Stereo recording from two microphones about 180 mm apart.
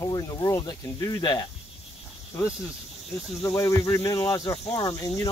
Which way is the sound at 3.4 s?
15° left (ahead or behind).